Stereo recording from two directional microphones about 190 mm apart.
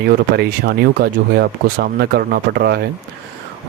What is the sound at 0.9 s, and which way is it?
Speech, 55° right (ahead or behind).